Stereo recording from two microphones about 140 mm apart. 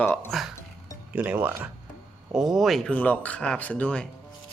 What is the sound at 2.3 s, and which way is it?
Speech, centre (ahead or behind).